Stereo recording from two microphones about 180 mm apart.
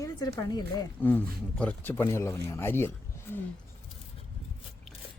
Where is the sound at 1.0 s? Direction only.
10° left (ahead or behind).